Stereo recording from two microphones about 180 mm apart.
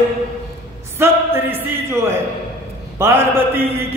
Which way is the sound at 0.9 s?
10° right (ahead or behind).